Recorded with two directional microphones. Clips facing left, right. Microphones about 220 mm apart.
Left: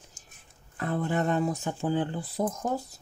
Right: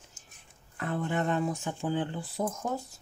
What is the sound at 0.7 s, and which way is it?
Speech, 35° left (ahead or behind).